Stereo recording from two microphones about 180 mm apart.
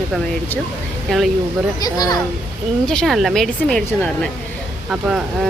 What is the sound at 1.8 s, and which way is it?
Speech, 20° left (ahead or behind).